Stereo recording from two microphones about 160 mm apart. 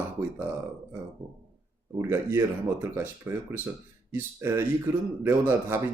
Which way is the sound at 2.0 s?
15° right (ahead or behind).